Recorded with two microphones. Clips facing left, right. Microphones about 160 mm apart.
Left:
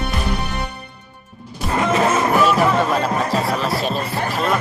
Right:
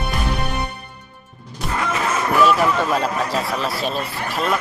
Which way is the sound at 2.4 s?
Centre (ahead or behind).